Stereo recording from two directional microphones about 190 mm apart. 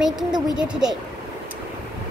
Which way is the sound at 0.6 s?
5° right (ahead or behind).